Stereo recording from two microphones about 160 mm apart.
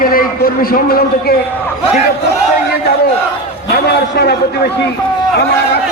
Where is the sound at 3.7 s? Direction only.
85° left.